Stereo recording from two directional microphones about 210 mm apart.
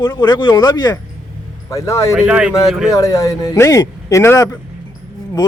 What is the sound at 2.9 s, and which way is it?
Speech, 15° left (ahead or behind).